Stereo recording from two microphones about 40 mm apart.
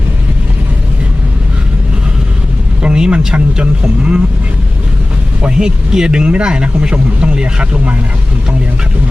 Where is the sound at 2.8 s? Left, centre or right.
Right.